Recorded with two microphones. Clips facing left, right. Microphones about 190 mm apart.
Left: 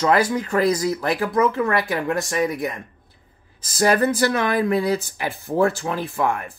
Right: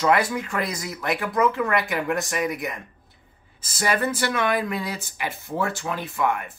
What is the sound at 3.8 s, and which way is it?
Speech, 40° left (ahead or behind).